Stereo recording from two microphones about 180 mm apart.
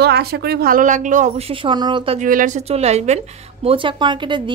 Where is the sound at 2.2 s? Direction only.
45° right (ahead or behind).